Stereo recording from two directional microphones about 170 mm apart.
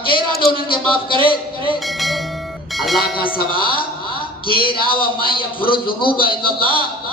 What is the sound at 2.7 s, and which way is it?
Music, centre (ahead or behind).